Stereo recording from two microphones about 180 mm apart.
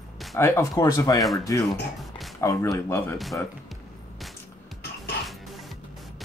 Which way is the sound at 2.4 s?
15° left (ahead or behind).